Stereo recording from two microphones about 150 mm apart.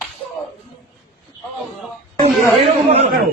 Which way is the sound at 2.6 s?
40° right (ahead or behind).